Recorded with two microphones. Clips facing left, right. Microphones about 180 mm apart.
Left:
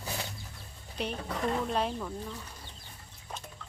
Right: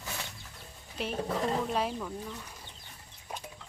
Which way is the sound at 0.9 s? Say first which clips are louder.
Right 2 dB; centre (ahead or behind).